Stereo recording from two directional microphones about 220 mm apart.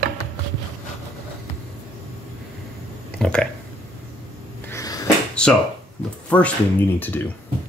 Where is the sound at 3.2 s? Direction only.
5° left (ahead or behind).